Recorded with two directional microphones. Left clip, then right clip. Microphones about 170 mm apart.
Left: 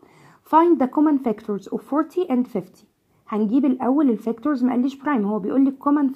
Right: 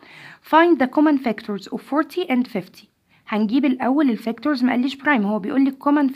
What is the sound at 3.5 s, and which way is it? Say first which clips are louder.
Speech: even; 10° right (ahead or behind).